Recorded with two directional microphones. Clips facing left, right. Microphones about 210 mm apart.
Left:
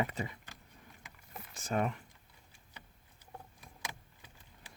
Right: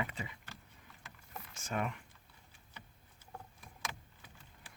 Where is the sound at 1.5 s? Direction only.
35° left (ahead or behind).